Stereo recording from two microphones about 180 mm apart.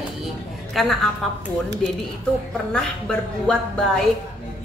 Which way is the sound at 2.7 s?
5° left (ahead or behind).